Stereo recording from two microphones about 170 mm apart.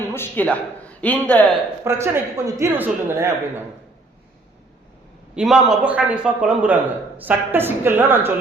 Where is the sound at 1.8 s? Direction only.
15° right (ahead or behind).